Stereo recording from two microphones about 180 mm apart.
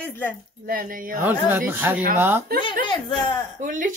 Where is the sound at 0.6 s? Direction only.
50° right (ahead or behind).